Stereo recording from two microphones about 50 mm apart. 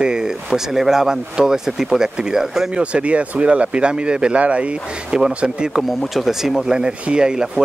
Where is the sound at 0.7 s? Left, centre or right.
Centre.